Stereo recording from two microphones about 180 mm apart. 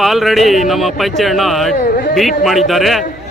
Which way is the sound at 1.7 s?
55° left (ahead or behind).